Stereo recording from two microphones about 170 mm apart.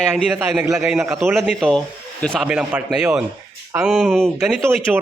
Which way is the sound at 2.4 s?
10° right (ahead or behind).